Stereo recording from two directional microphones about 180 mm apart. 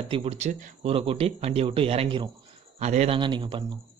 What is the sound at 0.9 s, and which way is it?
A man's voice, 30° right (ahead or behind).